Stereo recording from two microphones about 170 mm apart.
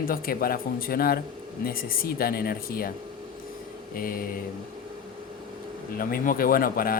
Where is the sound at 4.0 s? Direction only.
55° left (ahead or behind).